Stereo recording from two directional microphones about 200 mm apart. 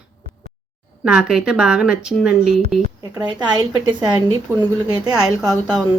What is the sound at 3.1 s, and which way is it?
Speech, 20° right (ahead or behind).